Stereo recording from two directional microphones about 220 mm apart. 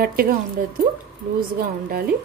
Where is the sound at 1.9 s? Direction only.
40° right (ahead or behind).